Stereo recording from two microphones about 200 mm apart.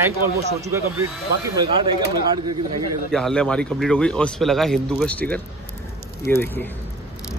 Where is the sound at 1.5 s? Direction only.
20° right (ahead or behind).